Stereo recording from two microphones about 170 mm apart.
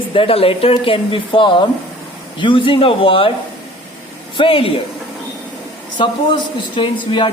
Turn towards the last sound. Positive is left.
turn(degrees=30)  # may be behind; listen again after turning